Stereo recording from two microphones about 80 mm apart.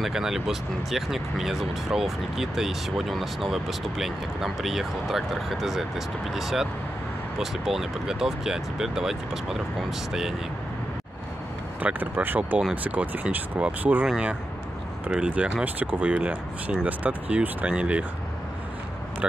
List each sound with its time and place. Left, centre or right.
0.0 s speech: centre
11.8 s speech: right
15.0 s speech: centre